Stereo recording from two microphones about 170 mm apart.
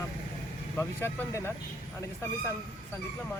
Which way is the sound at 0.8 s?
15° left (ahead or behind).